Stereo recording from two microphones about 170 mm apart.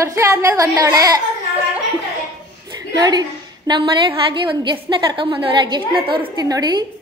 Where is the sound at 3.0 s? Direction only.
25° right (ahead or behind).